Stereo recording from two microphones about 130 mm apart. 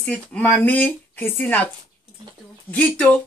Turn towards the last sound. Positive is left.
turn(degrees=10)  # may be behind; listen again after turning